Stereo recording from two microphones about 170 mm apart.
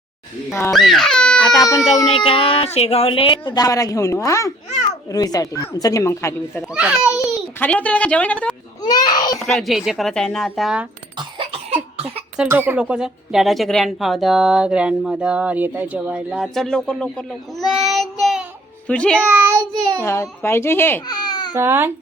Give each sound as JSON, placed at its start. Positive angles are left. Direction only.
{"t": 0.7, "sound": "speech", "side_deg": 0}
{"t": 1.5, "sound": "a woman's voice", "side_deg": 20}
{"t": 2.1, "sound": "a woman's voice", "side_deg": 35}
{"t": 6.6, "sound": "speech", "side_deg": -5}
{"t": 7.6, "sound": "a child's voice", "side_deg": 10}
{"t": 8.8, "sound": "a child's voice", "side_deg": 25}
{"t": 9.5, "sound": "speech", "side_deg": 0}
{"t": 11.7, "sound": "cough", "side_deg": -35}
{"t": 12.4, "sound": "speech", "side_deg": -10}
{"t": 19.3, "sound": "a child's voice", "side_deg": -15}
{"t": 20.0, "sound": "a child's voice", "side_deg": 15}
{"t": 21.1, "sound": "baby cry", "side_deg": 25}
{"t": 21.5, "sound": "a child's voice", "side_deg": -15}